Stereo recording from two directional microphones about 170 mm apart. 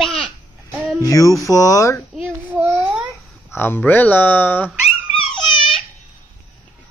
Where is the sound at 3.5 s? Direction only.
10° left (ahead or behind).